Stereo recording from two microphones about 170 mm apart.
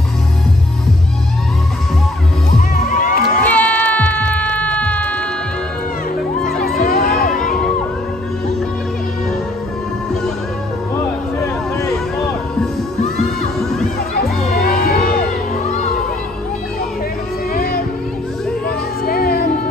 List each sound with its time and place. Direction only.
2.7 s crowd: 55° left (ahead or behind)
3.4 s music: 10° left (ahead or behind)
6.9 s crowd: 60° left (ahead or behind)
14.5 s music: 60° left (ahead or behind)
19.0 s music: 60° left (ahead or behind)